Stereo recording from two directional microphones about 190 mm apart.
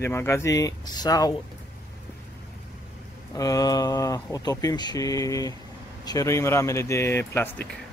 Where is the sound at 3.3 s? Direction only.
20° left (ahead or behind).